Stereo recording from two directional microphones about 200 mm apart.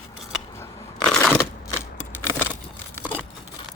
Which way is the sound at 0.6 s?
5° left (ahead or behind).